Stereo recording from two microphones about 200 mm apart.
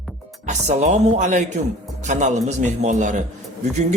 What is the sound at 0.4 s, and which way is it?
A man's voice, 35° right (ahead or behind).